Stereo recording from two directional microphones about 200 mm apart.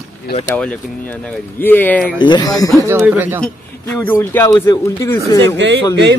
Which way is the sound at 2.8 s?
10° right (ahead or behind).